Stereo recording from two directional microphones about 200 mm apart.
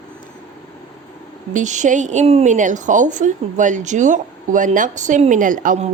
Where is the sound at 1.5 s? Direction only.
35° right (ahead or behind).